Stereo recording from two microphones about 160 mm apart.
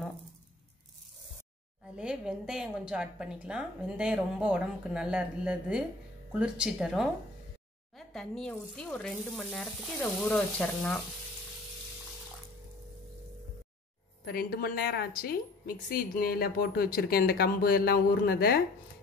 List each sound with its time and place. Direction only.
2.0 s a woman's voice: 5° right (ahead or behind)
14.2 s a woman's voice: 70° left (ahead or behind)